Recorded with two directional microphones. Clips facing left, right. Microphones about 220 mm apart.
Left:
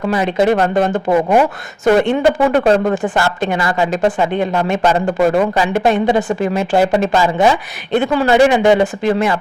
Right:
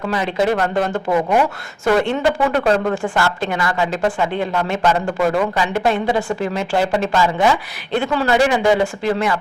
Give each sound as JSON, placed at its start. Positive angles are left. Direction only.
{"t": 0.1, "sound": "a woman's voice", "side_deg": 25}
{"t": 2.6, "sound": "a woman's voice", "side_deg": 30}
{"t": 2.9, "sound": "a woman's voice", "side_deg": 20}
{"t": 5.7, "sound": "a woman's voice", "side_deg": 20}